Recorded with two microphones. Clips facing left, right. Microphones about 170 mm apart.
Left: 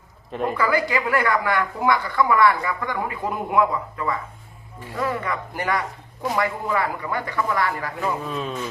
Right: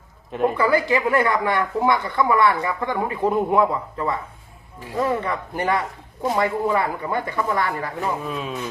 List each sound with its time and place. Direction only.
0.3 s speech: centre (ahead or behind)
0.5 s speech: 25° right (ahead or behind)
8.3 s speech: 5° right (ahead or behind)